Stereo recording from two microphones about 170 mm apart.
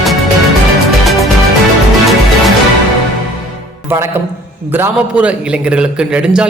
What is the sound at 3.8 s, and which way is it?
A man's voice, 15° right (ahead or behind).